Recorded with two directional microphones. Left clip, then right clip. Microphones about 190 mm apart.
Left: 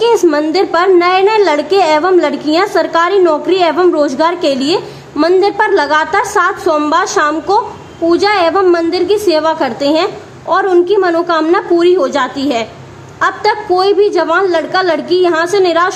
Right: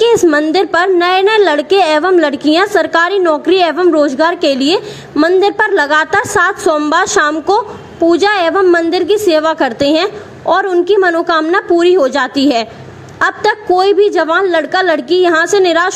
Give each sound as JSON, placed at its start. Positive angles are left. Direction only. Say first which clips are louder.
{"t": 0.0, "sound": "a woman's voice", "louder": "right 1 dB", "side_deg": -20}